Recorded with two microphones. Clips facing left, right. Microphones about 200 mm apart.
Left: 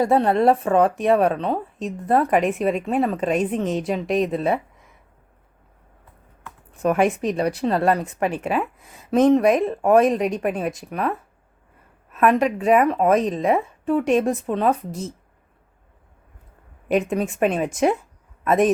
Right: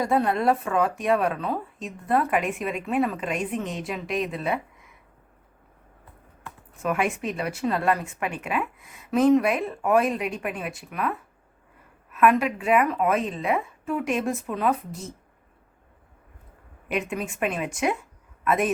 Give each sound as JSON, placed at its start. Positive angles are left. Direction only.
{"t": 0.0, "sound": "speech", "side_deg": 30}
{"t": 6.8, "sound": "speech", "side_deg": 35}
{"t": 12.1, "sound": "speech", "side_deg": 35}
{"t": 16.9, "sound": "speech", "side_deg": 35}